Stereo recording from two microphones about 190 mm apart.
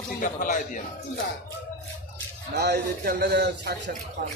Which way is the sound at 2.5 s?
60° right (ahead or behind).